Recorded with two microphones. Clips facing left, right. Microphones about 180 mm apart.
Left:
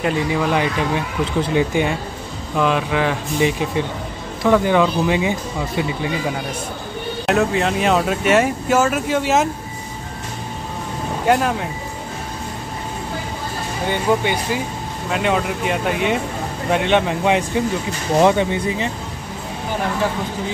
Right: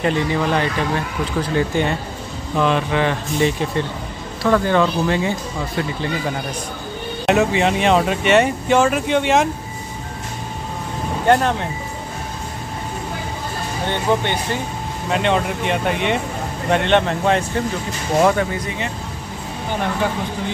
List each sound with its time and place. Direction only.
0.0 s speech: 10° left (ahead or behind)
7.2 s speech: centre (ahead or behind)
11.2 s speech: 5° left (ahead or behind)
13.8 s speech: 10° left (ahead or behind)